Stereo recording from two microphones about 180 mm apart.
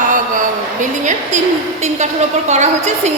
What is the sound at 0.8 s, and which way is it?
Speech, 45° right (ahead or behind).